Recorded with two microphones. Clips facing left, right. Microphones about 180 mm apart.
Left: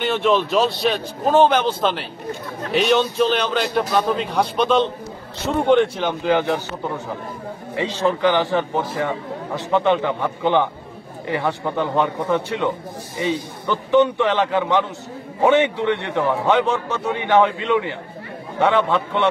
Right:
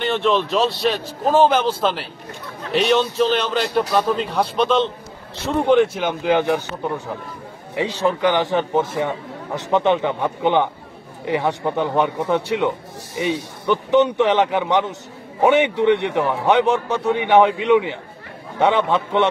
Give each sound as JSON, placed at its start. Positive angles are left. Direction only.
{"t": 0.0, "sound": "a man's voice", "side_deg": 0}
{"t": 6.0, "sound": "a man's voice", "side_deg": -15}
{"t": 13.1, "sound": "speech", "side_deg": -70}
{"t": 13.7, "sound": "a man's voice", "side_deg": -20}